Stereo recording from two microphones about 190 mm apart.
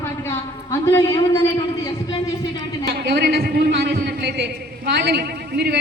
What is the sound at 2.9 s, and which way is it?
A man's voice, 55° right (ahead or behind).